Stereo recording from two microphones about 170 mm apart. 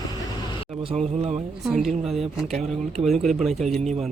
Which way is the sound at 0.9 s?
40° right (ahead or behind).